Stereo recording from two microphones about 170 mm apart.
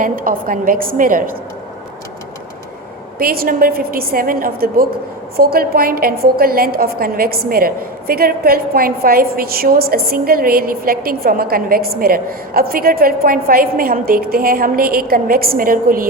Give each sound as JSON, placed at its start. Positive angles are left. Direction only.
{"t": 0.0, "sound": "a woman's voice", "side_deg": -55}
{"t": 3.2, "sound": "a woman's voice", "side_deg": -60}